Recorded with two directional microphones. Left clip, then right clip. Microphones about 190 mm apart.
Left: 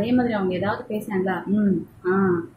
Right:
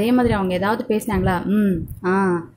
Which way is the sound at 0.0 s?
55° right (ahead or behind).